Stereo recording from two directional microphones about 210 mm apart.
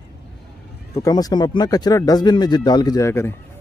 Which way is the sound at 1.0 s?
15° left (ahead or behind).